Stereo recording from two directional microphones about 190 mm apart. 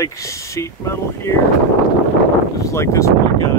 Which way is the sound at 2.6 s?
15° left (ahead or behind).